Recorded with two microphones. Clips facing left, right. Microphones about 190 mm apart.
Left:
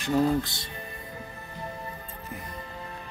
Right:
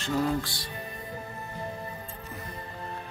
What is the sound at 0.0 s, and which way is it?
Speech, 20° left (ahead or behind).